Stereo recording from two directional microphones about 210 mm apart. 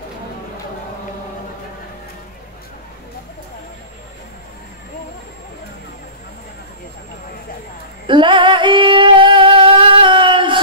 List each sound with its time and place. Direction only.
8.1 s singing: 25° right (ahead or behind)